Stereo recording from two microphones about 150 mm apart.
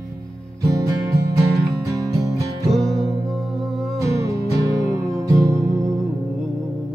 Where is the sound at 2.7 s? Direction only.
Centre (ahead or behind).